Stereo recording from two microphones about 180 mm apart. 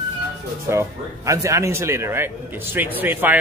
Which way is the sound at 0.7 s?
15° right (ahead or behind).